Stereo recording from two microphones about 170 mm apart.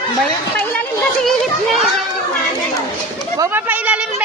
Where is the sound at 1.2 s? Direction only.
Centre (ahead or behind).